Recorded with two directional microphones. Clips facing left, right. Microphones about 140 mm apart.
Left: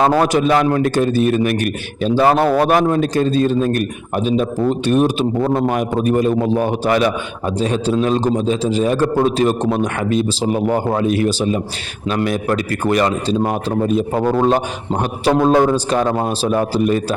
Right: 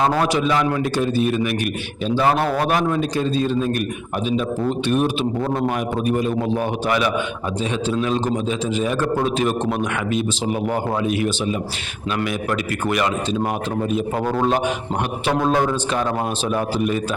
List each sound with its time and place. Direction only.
0.0 s a man's voice: 50° left (ahead or behind)
4.9 s a man's voice: 40° left (ahead or behind)
15.2 s a man's voice: 35° left (ahead or behind)